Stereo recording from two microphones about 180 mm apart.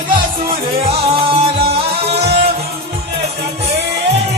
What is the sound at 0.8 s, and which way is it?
Music, 35° right (ahead or behind).